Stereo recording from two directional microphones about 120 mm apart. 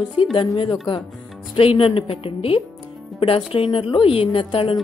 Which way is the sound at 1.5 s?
50° left (ahead or behind).